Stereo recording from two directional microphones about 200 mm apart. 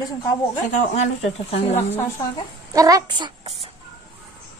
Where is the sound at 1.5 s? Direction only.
30° left (ahead or behind).